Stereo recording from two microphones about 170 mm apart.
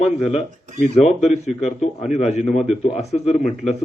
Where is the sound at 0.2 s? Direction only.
35° left (ahead or behind).